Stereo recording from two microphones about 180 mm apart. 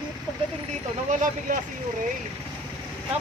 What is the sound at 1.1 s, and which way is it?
Speech, 45° right (ahead or behind).